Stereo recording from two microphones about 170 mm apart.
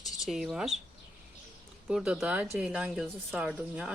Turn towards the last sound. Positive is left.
turn(degrees=-5)  # may be behind; listen again after turning